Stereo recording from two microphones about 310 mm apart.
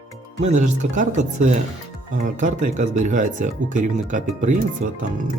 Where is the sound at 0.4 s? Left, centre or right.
Right.